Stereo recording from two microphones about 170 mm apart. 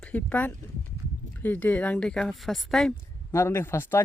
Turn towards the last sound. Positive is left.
turn(degrees=15)  # may be behind; listen again after turning